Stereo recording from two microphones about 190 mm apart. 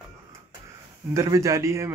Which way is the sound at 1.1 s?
15° right (ahead or behind).